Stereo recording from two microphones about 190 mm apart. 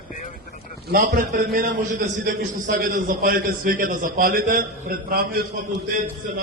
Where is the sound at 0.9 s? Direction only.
50° right (ahead or behind).